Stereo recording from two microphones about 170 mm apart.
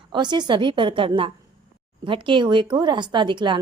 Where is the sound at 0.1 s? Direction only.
25° right (ahead or behind).